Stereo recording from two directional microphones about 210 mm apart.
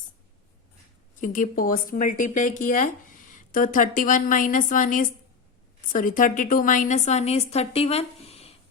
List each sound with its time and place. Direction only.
1.1 s speech: 40° left (ahead or behind)